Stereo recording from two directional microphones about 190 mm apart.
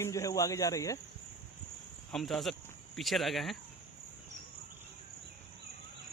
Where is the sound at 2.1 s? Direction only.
Centre (ahead or behind).